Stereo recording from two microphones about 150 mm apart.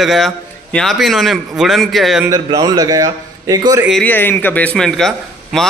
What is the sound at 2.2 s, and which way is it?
A man's voice, 25° right (ahead or behind).